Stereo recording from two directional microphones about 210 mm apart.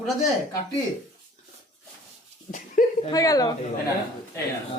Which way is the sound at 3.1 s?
15° left (ahead or behind).